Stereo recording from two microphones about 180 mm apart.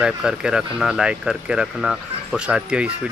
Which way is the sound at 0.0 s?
5° right (ahead or behind).